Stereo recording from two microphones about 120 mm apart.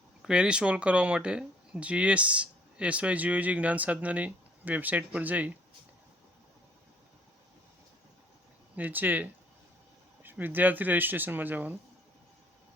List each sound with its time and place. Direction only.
0.2 s speech: 5° right (ahead or behind)
8.7 s speech: 15° right (ahead or behind)